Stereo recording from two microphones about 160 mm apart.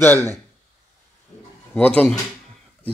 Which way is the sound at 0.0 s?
15° left (ahead or behind).